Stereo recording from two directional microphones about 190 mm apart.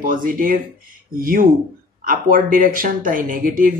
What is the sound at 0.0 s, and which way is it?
Speech, 45° right (ahead or behind).